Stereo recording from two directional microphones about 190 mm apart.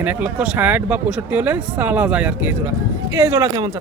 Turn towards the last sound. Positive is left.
turn(degrees=-20)  # may be behind; listen again after turning